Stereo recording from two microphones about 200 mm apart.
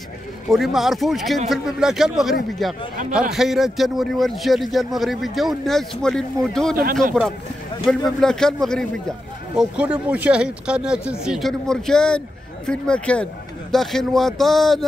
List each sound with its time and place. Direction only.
0.5 s speech: centre (ahead or behind)
6.7 s speech: 45° right (ahead or behind)
7.8 s speech: 5° left (ahead or behind)